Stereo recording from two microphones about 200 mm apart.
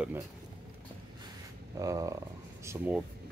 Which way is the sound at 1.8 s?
15° right (ahead or behind).